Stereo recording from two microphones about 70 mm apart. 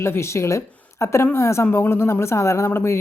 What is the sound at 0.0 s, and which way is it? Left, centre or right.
A woman's voice, left.